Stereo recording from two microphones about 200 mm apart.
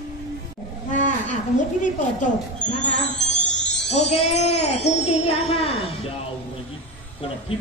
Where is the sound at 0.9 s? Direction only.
40° left (ahead or behind).